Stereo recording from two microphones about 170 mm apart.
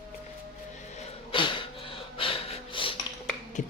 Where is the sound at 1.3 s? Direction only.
30° left (ahead or behind).